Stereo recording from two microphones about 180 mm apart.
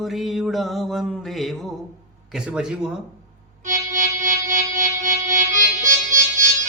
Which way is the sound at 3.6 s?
45° right (ahead or behind).